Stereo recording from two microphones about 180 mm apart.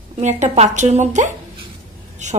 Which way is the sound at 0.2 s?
40° right (ahead or behind).